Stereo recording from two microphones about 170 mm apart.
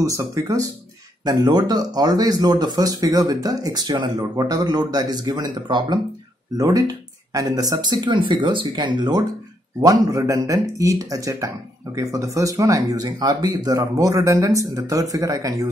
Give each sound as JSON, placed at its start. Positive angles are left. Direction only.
{"t": 0.0, "sound": "speech", "side_deg": -20}